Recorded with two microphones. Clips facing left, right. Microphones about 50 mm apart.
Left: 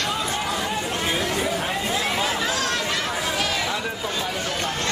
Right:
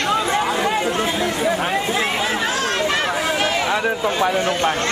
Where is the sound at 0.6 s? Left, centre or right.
Right.